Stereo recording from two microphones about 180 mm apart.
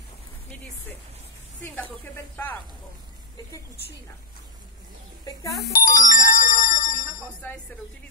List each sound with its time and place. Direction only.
1.6 s speech: 10° left (ahead or behind)
5.7 s music: 45° left (ahead or behind)
7.4 s speech: 10° left (ahead or behind)